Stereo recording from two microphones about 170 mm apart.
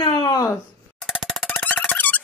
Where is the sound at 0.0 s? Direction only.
25° left (ahead or behind).